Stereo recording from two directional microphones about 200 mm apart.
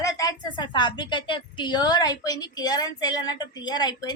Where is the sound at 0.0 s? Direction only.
15° left (ahead or behind).